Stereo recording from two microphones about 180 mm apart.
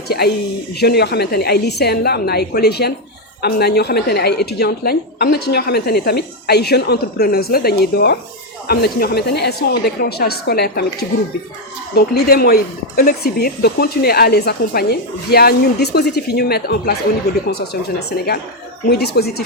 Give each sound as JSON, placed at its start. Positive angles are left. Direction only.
{"t": 0.1, "sound": "a woman's voice", "side_deg": 60}
{"t": 11.9, "sound": "a woman's voice", "side_deg": 60}
{"t": 18.9, "sound": "a woman's voice", "side_deg": 65}